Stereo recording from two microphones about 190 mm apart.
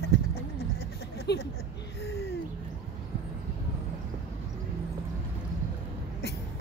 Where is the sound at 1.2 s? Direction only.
60° left (ahead or behind).